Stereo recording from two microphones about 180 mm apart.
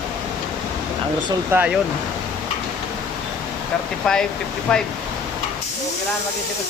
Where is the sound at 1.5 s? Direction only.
10° right (ahead or behind).